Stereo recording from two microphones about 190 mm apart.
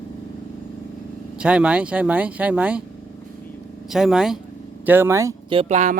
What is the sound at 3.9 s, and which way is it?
Speech, centre (ahead or behind).